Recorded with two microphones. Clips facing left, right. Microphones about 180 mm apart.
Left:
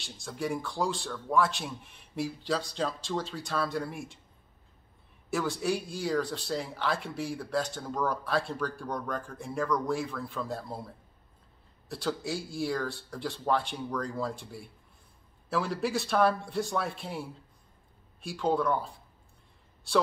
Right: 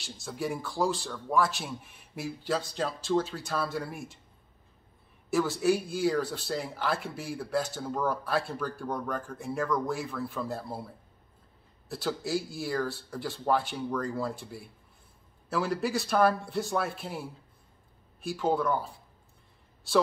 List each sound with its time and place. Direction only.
0.0 s speech: centre (ahead or behind)
5.3 s speech: 5° right (ahead or behind)
11.9 s speech: 5° right (ahead or behind)
18.2 s speech: centre (ahead or behind)